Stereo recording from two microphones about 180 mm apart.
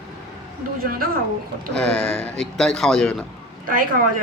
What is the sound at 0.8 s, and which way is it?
Speech, 55° right (ahead or behind).